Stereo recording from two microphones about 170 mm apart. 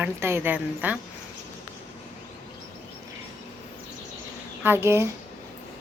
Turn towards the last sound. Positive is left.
turn(degrees=-15)  # may be behind; listen again after turning